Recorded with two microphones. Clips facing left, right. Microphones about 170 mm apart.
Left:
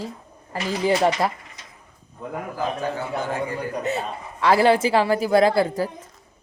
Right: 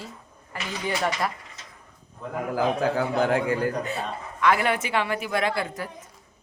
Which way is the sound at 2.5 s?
90° right.